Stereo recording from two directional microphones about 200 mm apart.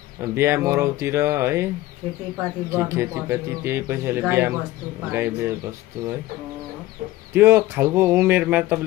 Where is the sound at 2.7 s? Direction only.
15° right (ahead or behind).